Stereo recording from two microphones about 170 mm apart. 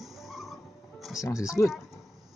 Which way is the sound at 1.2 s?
15° left (ahead or behind).